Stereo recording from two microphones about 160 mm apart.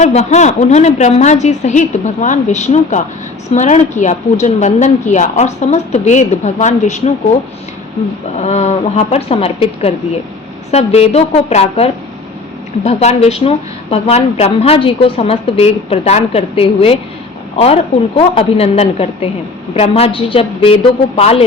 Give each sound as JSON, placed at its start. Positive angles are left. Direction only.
{"t": 0.0, "sound": "a woman's voice", "side_deg": 40}
{"t": 8.4, "sound": "a woman's voice", "side_deg": 40}
{"t": 18.3, "sound": "a woman's voice", "side_deg": 40}